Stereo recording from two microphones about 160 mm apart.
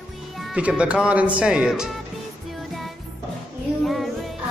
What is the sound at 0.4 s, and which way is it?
Speech, 5° right (ahead or behind).